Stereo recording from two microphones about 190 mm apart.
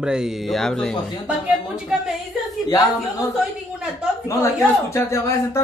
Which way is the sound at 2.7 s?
20° left (ahead or behind).